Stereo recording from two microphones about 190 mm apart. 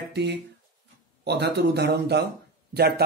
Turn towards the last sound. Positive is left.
turn(degrees=-55)  # may be behind; listen again after turning